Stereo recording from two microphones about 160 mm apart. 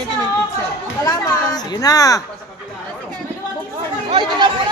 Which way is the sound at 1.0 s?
25° left (ahead or behind).